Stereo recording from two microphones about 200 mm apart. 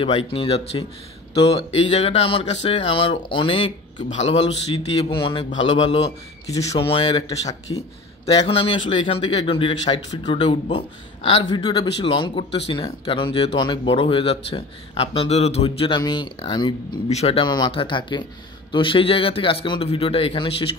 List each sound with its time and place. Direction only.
0.3 s speech: 25° left (ahead or behind)